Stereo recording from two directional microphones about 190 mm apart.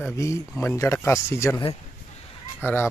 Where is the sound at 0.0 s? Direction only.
15° left (ahead or behind).